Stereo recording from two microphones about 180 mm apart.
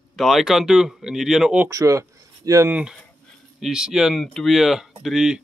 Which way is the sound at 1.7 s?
20° right (ahead or behind).